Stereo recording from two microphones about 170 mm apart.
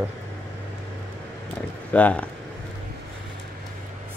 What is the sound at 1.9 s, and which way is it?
Speech, 10° left (ahead or behind).